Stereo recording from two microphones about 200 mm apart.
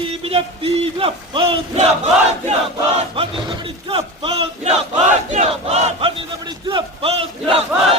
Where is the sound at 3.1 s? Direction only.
25° right (ahead or behind).